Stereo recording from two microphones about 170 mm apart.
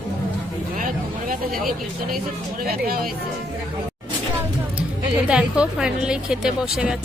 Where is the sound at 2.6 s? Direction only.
60° right (ahead or behind).